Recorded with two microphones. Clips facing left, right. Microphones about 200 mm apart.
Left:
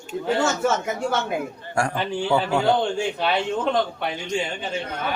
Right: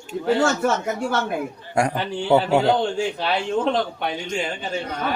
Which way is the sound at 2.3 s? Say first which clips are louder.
Right 5 dB; 20° right (ahead or behind).